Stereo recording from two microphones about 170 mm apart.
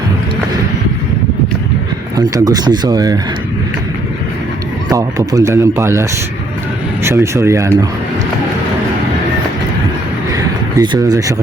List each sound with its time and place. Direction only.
2.1 s speech: 20° right (ahead or behind)
4.9 s speech: 20° right (ahead or behind)
10.3 s a sound: 20° right (ahead or behind)